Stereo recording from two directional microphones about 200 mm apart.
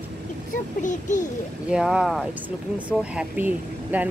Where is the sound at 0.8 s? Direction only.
40° left (ahead or behind).